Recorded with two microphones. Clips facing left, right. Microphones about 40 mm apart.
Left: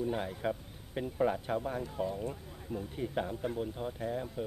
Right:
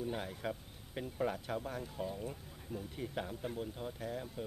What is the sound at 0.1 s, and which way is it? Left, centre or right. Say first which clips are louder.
A man's voice: left 6 dB; centre.